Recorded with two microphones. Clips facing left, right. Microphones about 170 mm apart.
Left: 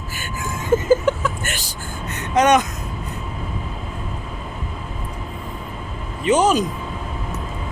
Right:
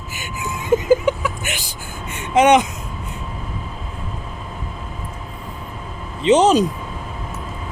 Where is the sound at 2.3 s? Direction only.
20° right (ahead or behind).